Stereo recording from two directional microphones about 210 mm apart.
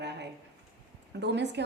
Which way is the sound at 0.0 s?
55° right (ahead or behind).